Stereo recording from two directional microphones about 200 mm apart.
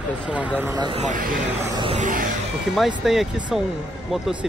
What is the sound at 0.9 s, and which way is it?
Speech, 40° right (ahead or behind).